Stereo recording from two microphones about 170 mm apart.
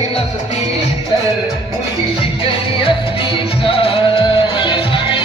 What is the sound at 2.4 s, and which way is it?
Music, 30° left (ahead or behind).